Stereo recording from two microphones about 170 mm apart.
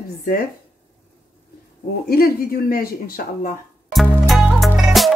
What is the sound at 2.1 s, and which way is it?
A woman's voice, 65° left (ahead or behind).